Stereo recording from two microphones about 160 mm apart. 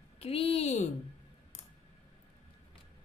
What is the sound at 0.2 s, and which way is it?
Speech, 35° left (ahead or behind).